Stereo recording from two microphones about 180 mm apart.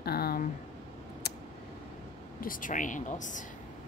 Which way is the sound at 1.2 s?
65° left (ahead or behind).